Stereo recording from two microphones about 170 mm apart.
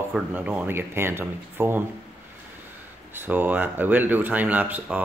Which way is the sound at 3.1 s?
10° right (ahead or behind).